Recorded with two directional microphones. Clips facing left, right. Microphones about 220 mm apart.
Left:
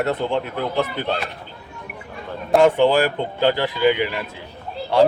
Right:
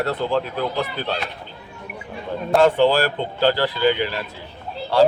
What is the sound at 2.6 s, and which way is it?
Speech, 15° left (ahead or behind).